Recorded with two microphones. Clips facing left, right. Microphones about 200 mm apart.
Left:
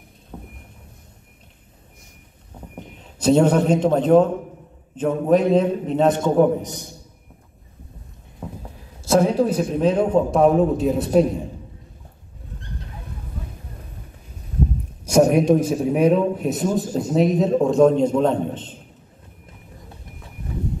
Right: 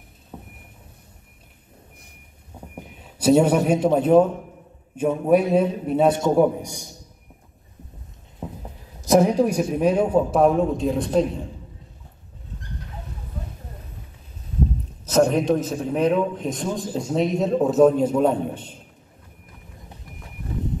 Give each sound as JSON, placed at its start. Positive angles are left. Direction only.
{"t": 0.3, "sound": "vehicle", "side_deg": -5}
{"t": 2.7, "sound": "a man's voice", "side_deg": -10}
{"t": 8.4, "sound": "a sound", "side_deg": -20}
{"t": 9.0, "sound": "a man's voice", "side_deg": -15}
{"t": 15.0, "sound": "a man's voice", "side_deg": 10}